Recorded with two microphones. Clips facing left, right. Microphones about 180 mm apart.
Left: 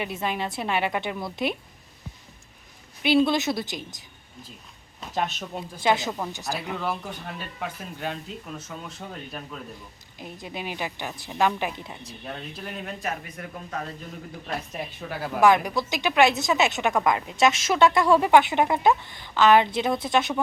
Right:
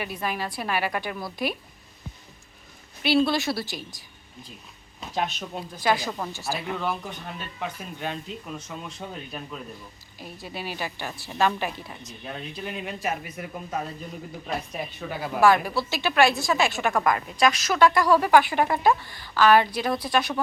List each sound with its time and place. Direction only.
0.0 s speech: 25° left (ahead or behind)
3.0 s speech: 15° left (ahead or behind)
4.9 s speech: centre (ahead or behind)
5.8 s speech: 25° left (ahead or behind)
6.1 s speech: 5° left (ahead or behind)
10.2 s speech: 20° left (ahead or behind)
12.2 s speech: centre (ahead or behind)
15.4 s speech: 20° left (ahead or behind)